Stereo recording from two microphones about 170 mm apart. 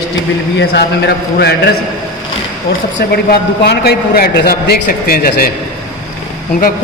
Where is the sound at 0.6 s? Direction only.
80° left.